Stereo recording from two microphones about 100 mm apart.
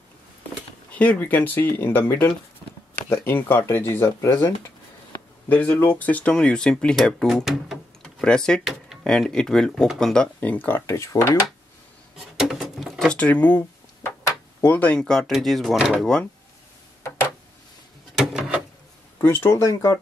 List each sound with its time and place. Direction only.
0.9 s speech: 15° left (ahead or behind); by 7.8 s centre (ahead or behind)
8.0 s tick-tock: 10° left (ahead or behind)
9.0 s speech: 5° left (ahead or behind)
10.4 s speech: 15° left (ahead or behind)
12.4 s a sound: centre (ahead or behind)
13.1 s a sound: 15° left (ahead or behind)
14.6 s speech: 15° left (ahead or behind)
18.1 s a sound: 5° right (ahead or behind)
19.2 s speech: 25° left (ahead or behind)